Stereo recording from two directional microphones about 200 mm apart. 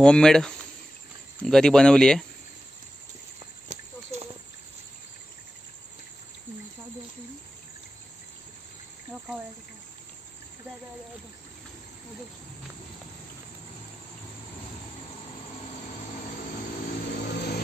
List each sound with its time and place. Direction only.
0.0 s speech: 5° left (ahead or behind)
3.6 s a sound: 35° right (ahead or behind)
17.3 s vehicle: 55° left (ahead or behind)